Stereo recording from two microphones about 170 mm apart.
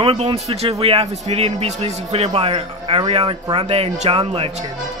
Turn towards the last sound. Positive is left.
turn(degrees=-35)  # may be behind; listen again after turning